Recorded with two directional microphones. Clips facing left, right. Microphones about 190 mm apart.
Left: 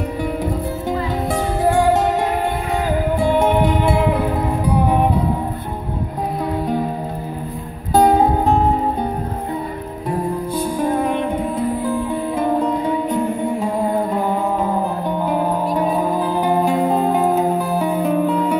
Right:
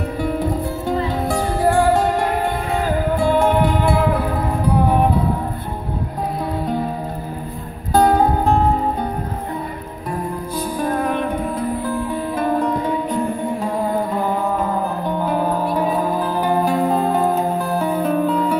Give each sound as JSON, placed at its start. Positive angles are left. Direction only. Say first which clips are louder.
{"t": 0.2, "sound": "music", "louder": "right 3 dB", "side_deg": 15}
{"t": 3.2, "sound": "music", "louder": "even", "side_deg": 20}
{"t": 7.9, "sound": "music", "louder": "left 1 dB", "side_deg": 20}
{"t": 10.8, "sound": "music", "louder": "left 1 dB", "side_deg": 20}
{"t": 12.4, "sound": "music", "louder": "even", "side_deg": 20}
{"t": 14.1, "sound": "music", "louder": "left 1 dB", "side_deg": 15}